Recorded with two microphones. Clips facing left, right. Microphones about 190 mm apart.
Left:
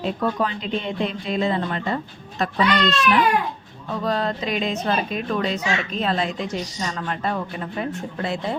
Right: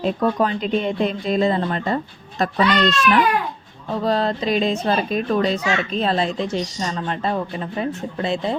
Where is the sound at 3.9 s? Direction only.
30° right (ahead or behind).